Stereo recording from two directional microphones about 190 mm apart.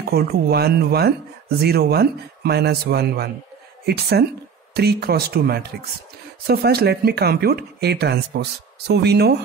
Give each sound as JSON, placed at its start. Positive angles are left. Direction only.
{"t": 0.1, "sound": "speech", "side_deg": -55}